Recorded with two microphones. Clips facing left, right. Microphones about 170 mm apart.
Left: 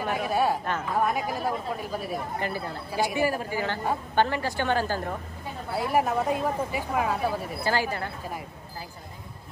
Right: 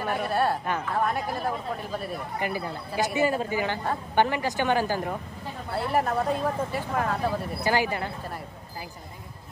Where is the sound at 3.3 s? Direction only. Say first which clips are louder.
Right 2 dB; 20° right (ahead or behind).